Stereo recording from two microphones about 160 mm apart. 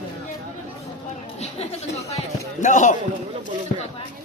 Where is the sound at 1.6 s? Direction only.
40° left (ahead or behind).